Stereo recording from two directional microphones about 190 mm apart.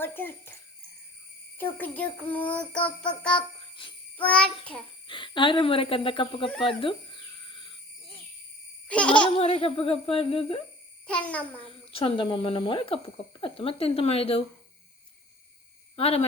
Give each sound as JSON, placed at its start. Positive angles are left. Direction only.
{"t": 0.0, "sound": "child singing", "side_deg": 10}
{"t": 1.5, "sound": "child singing", "side_deg": 10}
{"t": 3.8, "sound": "speech", "side_deg": 25}
{"t": 4.2, "sound": "a child's voice", "side_deg": 5}
{"t": 5.0, "sound": "speech", "side_deg": 25}
{"t": 6.6, "sound": "a sound", "side_deg": 25}
{"t": 8.9, "sound": "child singing", "side_deg": 5}
{"t": 9.2, "sound": "a child's voice", "side_deg": 30}
{"t": 11.0, "sound": "child singing", "side_deg": 5}
{"t": 11.6, "sound": "a child's voice", "side_deg": 30}
{"t": 16.0, "sound": "a child's voice", "side_deg": 30}